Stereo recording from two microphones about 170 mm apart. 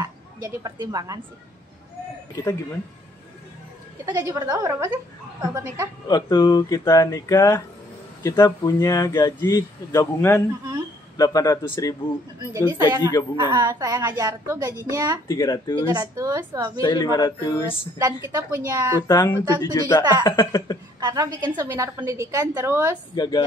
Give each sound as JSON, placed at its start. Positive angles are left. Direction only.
{"t": 0.0, "sound": "a woman's voice", "side_deg": -20}
{"t": 4.0, "sound": "a woman's voice", "side_deg": -20}
{"t": 6.0, "sound": "speech", "side_deg": 25}
{"t": 12.7, "sound": "a woman's voice", "side_deg": -20}
{"t": 15.2, "sound": "speech", "side_deg": 20}
{"t": 15.9, "sound": "a woman's voice", "side_deg": -20}
{"t": 16.8, "sound": "speech", "side_deg": 25}
{"t": 17.6, "sound": "a woman's voice", "side_deg": -20}
{"t": 18.9, "sound": "speech", "side_deg": 20}
{"t": 21.0, "sound": "a woman's voice", "side_deg": -20}
{"t": 23.1, "sound": "speech", "side_deg": 25}